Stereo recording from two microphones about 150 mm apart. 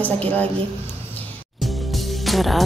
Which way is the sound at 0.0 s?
10° left (ahead or behind).